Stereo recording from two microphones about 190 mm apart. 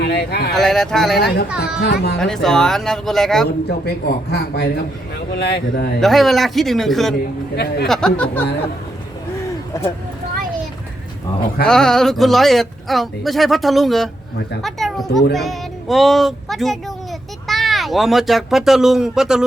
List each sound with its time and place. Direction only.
0.0 s speech: 60° left (ahead or behind)
0.5 s speech: centre (ahead or behind)
1.6 s speech: 60° left (ahead or behind)
2.1 s speech: 5° left (ahead or behind)
3.7 s speech: 55° left (ahead or behind)
6.0 s speech: centre (ahead or behind)
7.5 s speech: 60° left (ahead or behind)
7.9 s speech: 5° left (ahead or behind)
11.6 s speech: 5° left (ahead or behind)